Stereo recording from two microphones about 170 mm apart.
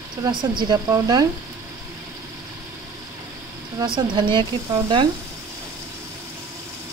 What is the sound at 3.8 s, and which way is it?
Speech, 25° right (ahead or behind).